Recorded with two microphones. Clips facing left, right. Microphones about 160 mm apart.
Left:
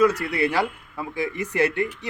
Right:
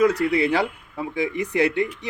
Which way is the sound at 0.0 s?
15° right (ahead or behind).